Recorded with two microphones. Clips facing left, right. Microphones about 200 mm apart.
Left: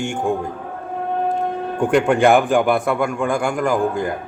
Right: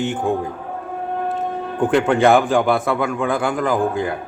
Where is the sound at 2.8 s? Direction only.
Centre (ahead or behind).